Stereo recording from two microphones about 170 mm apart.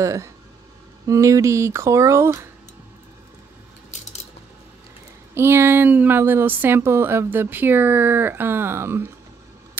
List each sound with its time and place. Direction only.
0.0 s speech: 15° right (ahead or behind)
5.3 s speech: 15° right (ahead or behind)